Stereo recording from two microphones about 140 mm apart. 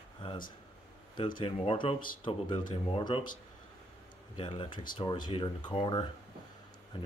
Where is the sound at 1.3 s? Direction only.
40° left (ahead or behind).